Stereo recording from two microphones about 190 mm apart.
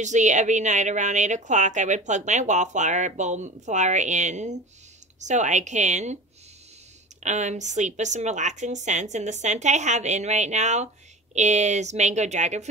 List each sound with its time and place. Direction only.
0.0 s a woman's voice: 40° right (ahead or behind)
7.2 s a woman's voice: 40° right (ahead or behind)